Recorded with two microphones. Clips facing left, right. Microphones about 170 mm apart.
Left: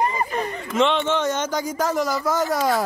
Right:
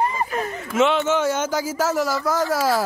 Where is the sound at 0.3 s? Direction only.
5° right (ahead or behind).